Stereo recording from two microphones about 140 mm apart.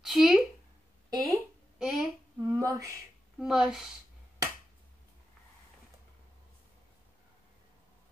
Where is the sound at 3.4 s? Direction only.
5° right (ahead or behind).